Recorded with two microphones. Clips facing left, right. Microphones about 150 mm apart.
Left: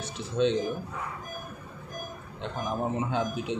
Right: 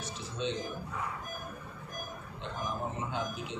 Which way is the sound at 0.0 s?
65° left (ahead or behind).